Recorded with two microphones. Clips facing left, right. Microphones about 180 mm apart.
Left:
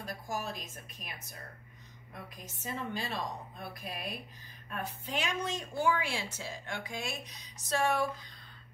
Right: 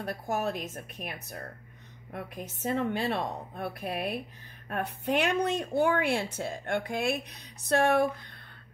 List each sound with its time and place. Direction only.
0.0 s a woman's voice: 60° right (ahead or behind)